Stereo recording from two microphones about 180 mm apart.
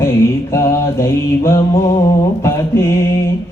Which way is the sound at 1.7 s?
25° left (ahead or behind).